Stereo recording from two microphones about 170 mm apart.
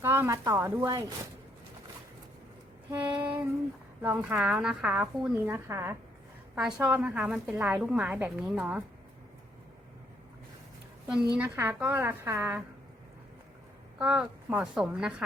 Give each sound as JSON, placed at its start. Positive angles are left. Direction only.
{"t": 0.0, "sound": "a woman's voice", "side_deg": -15}
{"t": 3.1, "sound": "child singing", "side_deg": -30}
{"t": 4.0, "sound": "a woman's voice", "side_deg": -10}
{"t": 6.6, "sound": "a woman's voice", "side_deg": -5}
{"t": 11.3, "sound": "a woman's voice", "side_deg": -10}
{"t": 14.0, "sound": "a woman's voice", "side_deg": -5}